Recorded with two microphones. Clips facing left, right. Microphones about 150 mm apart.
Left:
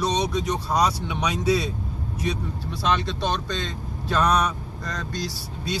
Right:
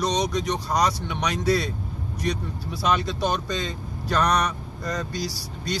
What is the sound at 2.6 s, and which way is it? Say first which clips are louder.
Speech: right 1 dB; 5° right (ahead or behind).